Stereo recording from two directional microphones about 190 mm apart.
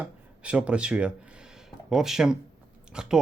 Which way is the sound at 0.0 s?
5° right (ahead or behind).